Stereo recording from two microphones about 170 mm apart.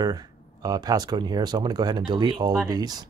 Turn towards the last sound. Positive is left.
turn(degrees=-25)  # may be behind; listen again after turning